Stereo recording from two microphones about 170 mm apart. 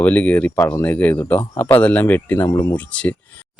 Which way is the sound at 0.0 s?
10° left (ahead or behind).